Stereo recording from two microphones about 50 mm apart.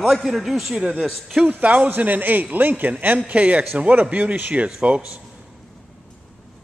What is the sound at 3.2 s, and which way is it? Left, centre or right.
Speech, right.